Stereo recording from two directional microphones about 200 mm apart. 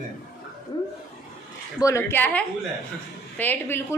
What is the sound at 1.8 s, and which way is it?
A woman's voice, 10° left (ahead or behind).